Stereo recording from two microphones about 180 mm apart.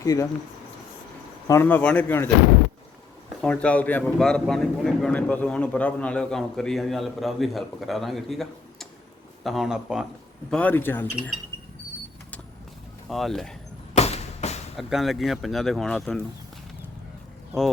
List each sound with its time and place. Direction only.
0.0 s speech: 20° left (ahead or behind)
1.5 s speech: 15° left (ahead or behind)
3.4 s a man's voice: 5° left (ahead or behind)
10.5 s speech: 10° left (ahead or behind)
13.1 s a man's voice: centre (ahead or behind)
13.9 s a sound: 35° left (ahead or behind)
14.8 s a man's voice: centre (ahead or behind)